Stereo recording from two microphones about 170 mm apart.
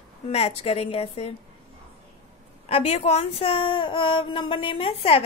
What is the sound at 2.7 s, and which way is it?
A woman's voice, 40° left (ahead or behind).